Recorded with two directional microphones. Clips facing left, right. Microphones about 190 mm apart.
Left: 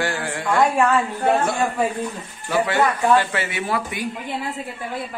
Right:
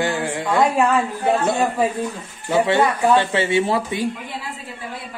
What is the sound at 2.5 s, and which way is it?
Speech, 25° right (ahead or behind).